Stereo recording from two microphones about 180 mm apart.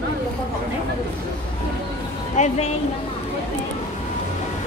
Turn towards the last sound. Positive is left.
turn(degrees=40)  # may be behind; listen again after turning